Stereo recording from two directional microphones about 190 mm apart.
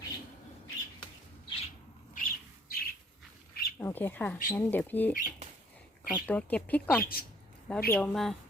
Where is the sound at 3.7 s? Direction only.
10° left (ahead or behind).